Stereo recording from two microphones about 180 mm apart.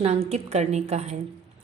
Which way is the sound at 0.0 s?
35° right (ahead or behind).